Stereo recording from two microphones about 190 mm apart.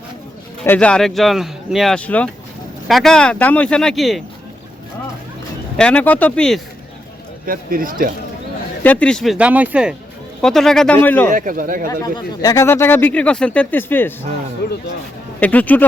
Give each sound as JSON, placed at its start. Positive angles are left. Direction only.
{"t": 0.6, "sound": "speech", "side_deg": 10}
{"t": 5.7, "sound": "speech", "side_deg": 5}
{"t": 7.4, "sound": "speech", "side_deg": -50}
{"t": 8.8, "sound": "speech", "side_deg": 10}
{"t": 11.3, "sound": "speech", "side_deg": -45}
{"t": 11.9, "sound": "speech", "side_deg": 20}
{"t": 14.6, "sound": "speech", "side_deg": 60}
{"t": 15.4, "sound": "speech", "side_deg": 10}